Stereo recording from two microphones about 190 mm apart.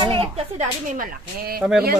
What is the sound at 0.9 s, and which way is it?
Speech, 55° right (ahead or behind).